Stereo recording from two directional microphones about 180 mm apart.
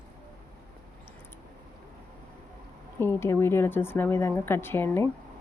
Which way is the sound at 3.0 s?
15° left (ahead or behind).